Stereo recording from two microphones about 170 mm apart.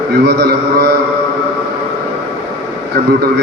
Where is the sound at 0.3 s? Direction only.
70° right (ahead or behind).